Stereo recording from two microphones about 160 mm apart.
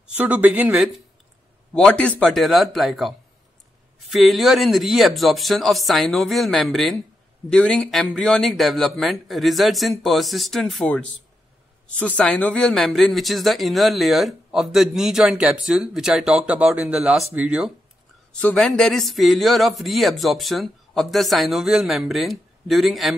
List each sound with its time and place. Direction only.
0.0 s speech: 10° right (ahead or behind)
1.7 s speech: 5° left (ahead or behind)
18.3 s speech: 5° left (ahead or behind)